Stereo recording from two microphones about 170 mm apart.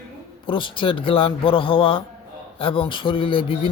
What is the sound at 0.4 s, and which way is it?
Speech, 30° left (ahead or behind).